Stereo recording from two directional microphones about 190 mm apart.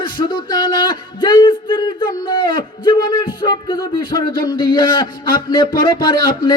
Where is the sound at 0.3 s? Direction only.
25° left (ahead or behind).